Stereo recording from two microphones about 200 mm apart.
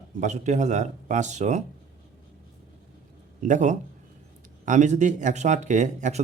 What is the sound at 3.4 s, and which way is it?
Speech, 40° right (ahead or behind).